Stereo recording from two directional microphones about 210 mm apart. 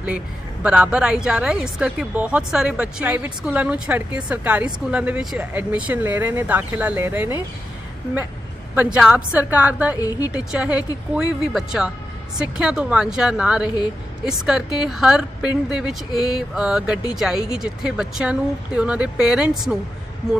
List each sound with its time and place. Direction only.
0.0 s a woman's voice: 5° right (ahead or behind)
8.7 s speech: 5° right (ahead or behind)
9.9 s a woman's voice: 15° left (ahead or behind)
10.3 s a woman's voice: 5° right (ahead or behind)